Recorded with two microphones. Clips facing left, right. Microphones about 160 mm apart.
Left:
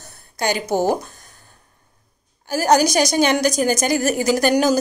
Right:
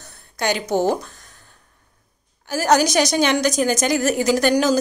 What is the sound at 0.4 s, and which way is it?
Speech, 40° left (ahead or behind).